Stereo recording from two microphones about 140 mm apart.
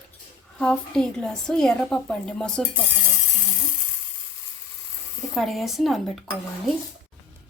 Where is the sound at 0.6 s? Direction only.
5° left (ahead or behind).